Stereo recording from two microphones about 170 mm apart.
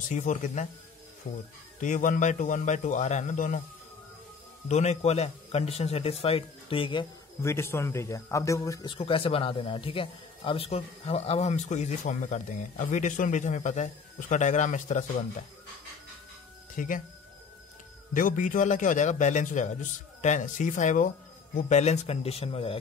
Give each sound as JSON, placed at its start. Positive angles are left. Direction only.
{"t": 0.1, "sound": "a man's voice", "side_deg": 45}
{"t": 1.8, "sound": "a man's voice", "side_deg": 50}
{"t": 4.6, "sound": "speech", "side_deg": 40}
{"t": 7.4, "sound": "a man's voice", "side_deg": 15}
{"t": 8.9, "sound": "a man's voice", "side_deg": 30}
{"t": 16.7, "sound": "speech", "side_deg": 50}
{"t": 18.1, "sound": "a man's voice", "side_deg": 50}